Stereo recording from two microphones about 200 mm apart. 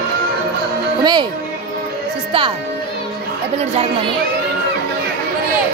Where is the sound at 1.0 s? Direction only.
20° right (ahead or behind).